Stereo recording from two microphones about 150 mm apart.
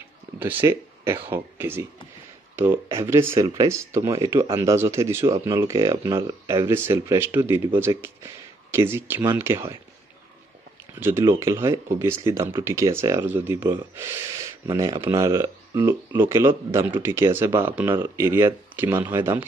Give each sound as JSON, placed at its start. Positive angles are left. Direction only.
{"t": 0.4, "sound": "speech", "side_deg": -15}
{"t": 11.0, "sound": "speech", "side_deg": -15}